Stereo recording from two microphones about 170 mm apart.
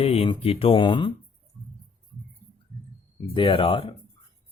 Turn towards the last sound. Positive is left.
turn(degrees=30)  # may be behind; listen again after turning